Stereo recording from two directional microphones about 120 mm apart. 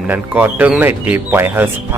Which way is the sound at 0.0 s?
15° right (ahead or behind).